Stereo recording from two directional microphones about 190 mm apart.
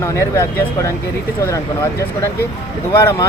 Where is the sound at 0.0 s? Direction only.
15° left (ahead or behind).